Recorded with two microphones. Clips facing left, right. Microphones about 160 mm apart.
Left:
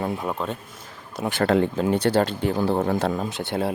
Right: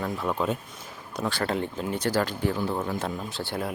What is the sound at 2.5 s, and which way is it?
Speech, 40° left (ahead or behind).